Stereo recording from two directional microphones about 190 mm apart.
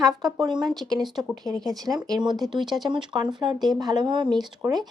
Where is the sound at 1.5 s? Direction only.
20° right (ahead or behind).